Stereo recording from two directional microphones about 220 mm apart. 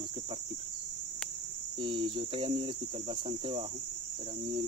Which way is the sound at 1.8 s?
20° right (ahead or behind).